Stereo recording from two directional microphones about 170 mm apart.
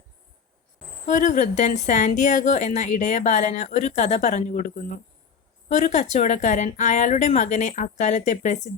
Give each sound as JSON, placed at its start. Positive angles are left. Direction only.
{"t": 1.0, "sound": "a woman's voice", "side_deg": 45}